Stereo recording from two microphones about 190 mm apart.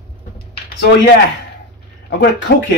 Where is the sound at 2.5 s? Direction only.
70° left (ahead or behind).